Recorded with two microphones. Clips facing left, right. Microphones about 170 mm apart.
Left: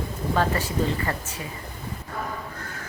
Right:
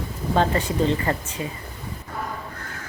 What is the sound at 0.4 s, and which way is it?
Speech, 25° right (ahead or behind).